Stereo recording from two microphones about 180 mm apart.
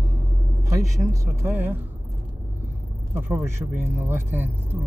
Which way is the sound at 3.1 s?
10° right (ahead or behind).